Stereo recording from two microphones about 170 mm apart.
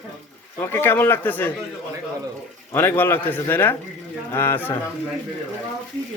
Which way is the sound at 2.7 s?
10° left (ahead or behind).